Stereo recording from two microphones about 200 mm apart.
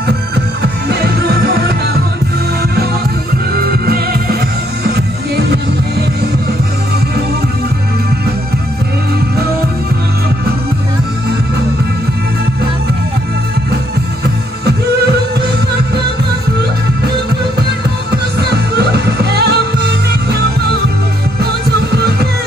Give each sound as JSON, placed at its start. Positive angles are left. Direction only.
{"t": 3.5, "sound": "music", "side_deg": -50}
{"t": 18.1, "sound": "music", "side_deg": -55}
{"t": 21.4, "sound": "heart sounds", "side_deg": -55}